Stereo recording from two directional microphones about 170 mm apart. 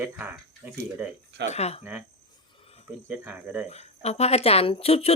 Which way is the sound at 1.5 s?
40° left (ahead or behind).